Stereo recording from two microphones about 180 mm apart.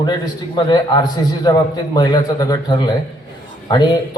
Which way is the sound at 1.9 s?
20° left (ahead or behind).